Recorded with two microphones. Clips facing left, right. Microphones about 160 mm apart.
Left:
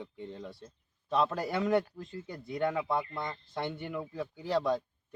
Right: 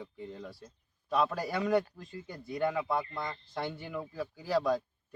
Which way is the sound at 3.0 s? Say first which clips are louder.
Even; 20° left (ahead or behind).